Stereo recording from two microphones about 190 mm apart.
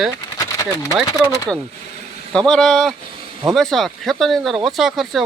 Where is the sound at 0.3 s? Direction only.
15° left (ahead or behind).